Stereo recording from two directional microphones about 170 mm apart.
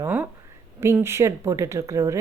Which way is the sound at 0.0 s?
10° right (ahead or behind).